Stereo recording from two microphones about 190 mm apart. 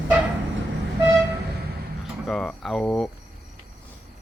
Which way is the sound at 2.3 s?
Centre (ahead or behind).